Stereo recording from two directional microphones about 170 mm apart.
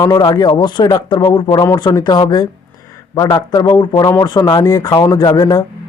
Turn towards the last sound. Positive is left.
turn(degrees=25)  # may be behind; listen again after turning